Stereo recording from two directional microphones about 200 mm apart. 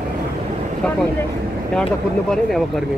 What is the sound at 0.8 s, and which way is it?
Speech, 5° left (ahead or behind).